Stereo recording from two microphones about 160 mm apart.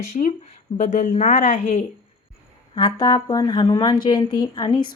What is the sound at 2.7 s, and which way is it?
Speech, 30° left (ahead or behind).